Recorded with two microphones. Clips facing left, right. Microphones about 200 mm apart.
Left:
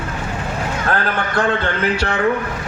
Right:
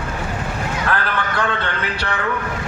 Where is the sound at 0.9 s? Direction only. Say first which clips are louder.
Left 3 dB; 45° left (ahead or behind).